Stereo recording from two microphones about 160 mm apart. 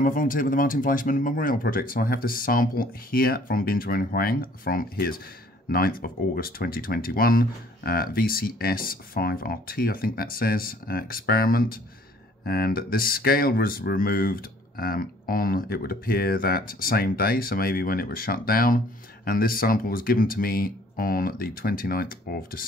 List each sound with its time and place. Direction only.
0.0 s speech: 55° left (ahead or behind)